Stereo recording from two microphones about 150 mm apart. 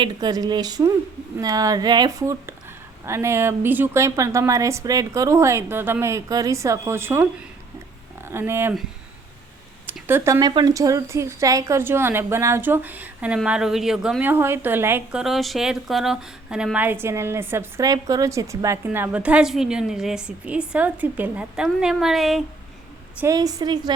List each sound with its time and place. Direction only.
0.0 s speech: 25° right (ahead or behind)
8.3 s a woman's voice: 15° right (ahead or behind)
9.8 s a sound: 15° right (ahead or behind)
10.4 s a woman's voice: 30° right (ahead or behind)
15.2 s a woman's voice: centre (ahead or behind)
23.2 s speech: 25° right (ahead or behind)